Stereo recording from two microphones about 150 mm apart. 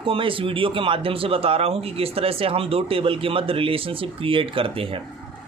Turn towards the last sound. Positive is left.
turn(degrees=-35)  # may be behind; listen again after turning